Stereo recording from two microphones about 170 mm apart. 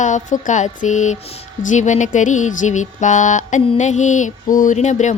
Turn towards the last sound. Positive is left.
turn(degrees=45)  # may be behind; listen again after turning